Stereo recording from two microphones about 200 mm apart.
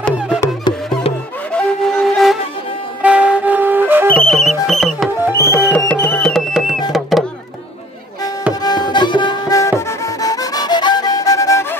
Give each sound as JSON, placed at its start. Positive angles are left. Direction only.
{"t": 1.5, "sound": "flute", "side_deg": 5}
{"t": 3.0, "sound": "music", "side_deg": -5}
{"t": 4.1, "sound": "music", "side_deg": 5}
{"t": 5.3, "sound": "music", "side_deg": 15}
{"t": 6.9, "sound": "a sound", "side_deg": 0}
{"t": 8.6, "sound": "music", "side_deg": 20}